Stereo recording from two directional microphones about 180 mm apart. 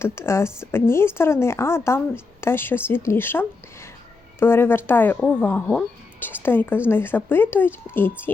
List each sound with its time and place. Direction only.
0.2 s a woman's voice: 15° left (ahead or behind)